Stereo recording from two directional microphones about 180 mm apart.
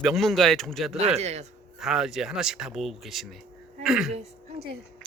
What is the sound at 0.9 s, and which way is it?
Speech, 35° right (ahead or behind).